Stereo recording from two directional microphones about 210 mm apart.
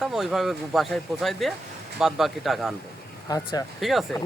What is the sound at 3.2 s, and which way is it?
Speech, 15° left (ahead or behind).